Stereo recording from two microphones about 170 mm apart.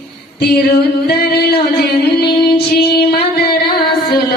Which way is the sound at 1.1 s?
65° left (ahead or behind).